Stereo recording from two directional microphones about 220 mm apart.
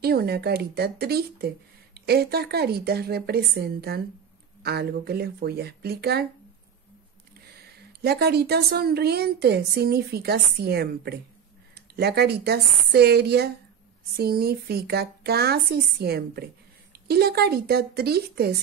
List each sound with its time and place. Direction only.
0.0 s a woman's voice: 45° right (ahead or behind)
8.0 s a woman's voice: 45° right (ahead or behind)